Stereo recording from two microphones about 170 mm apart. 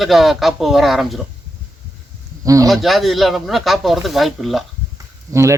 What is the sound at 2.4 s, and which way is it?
Speech, 20° right (ahead or behind).